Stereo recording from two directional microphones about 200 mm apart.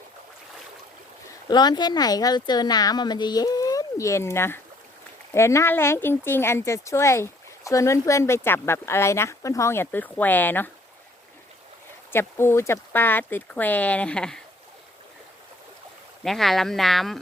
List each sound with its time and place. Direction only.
1.5 s speech: 20° left (ahead or behind)
12.1 s speech: 10° left (ahead or behind)
16.2 s speech: centre (ahead or behind)